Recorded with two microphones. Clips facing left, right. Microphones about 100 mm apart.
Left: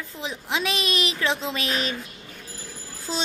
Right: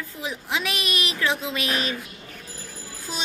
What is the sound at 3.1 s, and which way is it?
Speech, 25° left (ahead or behind).